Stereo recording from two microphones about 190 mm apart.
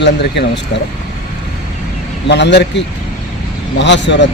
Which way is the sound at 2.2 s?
65° left (ahead or behind).